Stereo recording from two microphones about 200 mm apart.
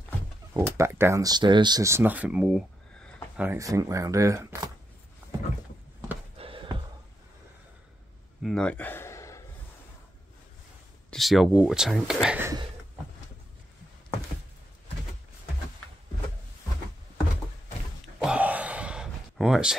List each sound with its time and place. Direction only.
0.6 s speech: 10° right (ahead or behind)
6.3 s a sound: 25° right (ahead or behind)
8.4 s gasp: centre (ahead or behind)
11.1 s speech: centre (ahead or behind)
18.0 s gasp: 5° right (ahead or behind)